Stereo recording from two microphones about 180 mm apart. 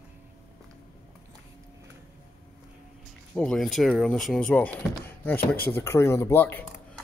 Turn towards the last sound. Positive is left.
turn(degrees=10)  # may be behind; listen again after turning